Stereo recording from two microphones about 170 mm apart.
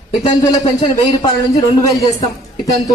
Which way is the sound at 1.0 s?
20° left (ahead or behind).